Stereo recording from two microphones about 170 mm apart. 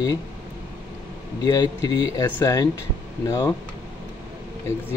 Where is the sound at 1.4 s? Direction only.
20° left (ahead or behind).